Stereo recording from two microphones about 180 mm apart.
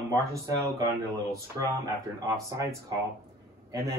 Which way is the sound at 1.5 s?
15° right (ahead or behind).